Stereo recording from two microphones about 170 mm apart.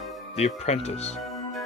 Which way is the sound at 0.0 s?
Centre (ahead or behind).